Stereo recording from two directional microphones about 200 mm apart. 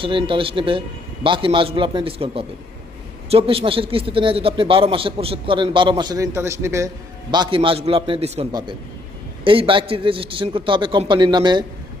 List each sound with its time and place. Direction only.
0.0 s a man's voice: 25° right (ahead or behind)